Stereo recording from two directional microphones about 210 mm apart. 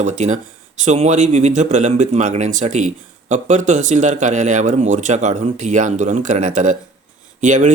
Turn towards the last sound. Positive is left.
turn(degrees=-35)  # may be behind; listen again after turning